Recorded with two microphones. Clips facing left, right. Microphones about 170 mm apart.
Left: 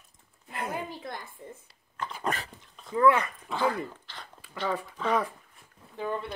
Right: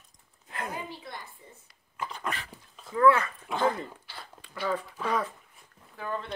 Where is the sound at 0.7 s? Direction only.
50° left (ahead or behind).